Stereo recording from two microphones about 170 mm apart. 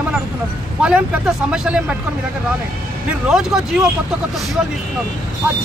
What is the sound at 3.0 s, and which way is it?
Speech, 5° right (ahead or behind).